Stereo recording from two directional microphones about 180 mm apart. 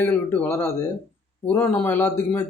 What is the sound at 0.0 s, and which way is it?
Speech, 10° left (ahead or behind).